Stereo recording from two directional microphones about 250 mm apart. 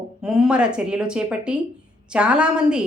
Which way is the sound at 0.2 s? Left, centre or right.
Centre.